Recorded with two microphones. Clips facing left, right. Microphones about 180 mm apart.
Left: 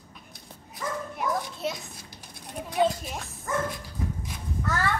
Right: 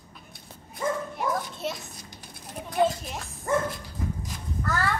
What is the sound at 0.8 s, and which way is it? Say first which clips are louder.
Dog: right 5 dB; 25° right (ahead or behind).